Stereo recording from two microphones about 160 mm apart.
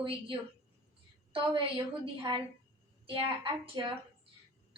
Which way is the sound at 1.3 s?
35° right (ahead or behind).